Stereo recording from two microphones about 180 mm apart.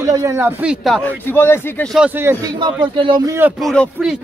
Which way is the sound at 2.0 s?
10° right (ahead or behind).